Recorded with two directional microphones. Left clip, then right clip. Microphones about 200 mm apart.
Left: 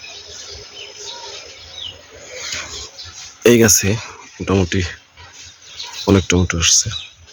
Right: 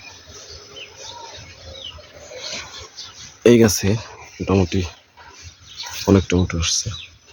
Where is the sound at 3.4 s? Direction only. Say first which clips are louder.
Left 2 dB; centre (ahead or behind).